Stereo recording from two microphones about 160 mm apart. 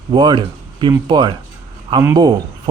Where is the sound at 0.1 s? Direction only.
30° right (ahead or behind).